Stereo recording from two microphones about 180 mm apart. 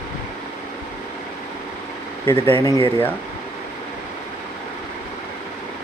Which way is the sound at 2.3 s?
30° right (ahead or behind).